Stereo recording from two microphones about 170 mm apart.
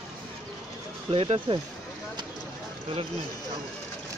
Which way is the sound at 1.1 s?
35° right (ahead or behind).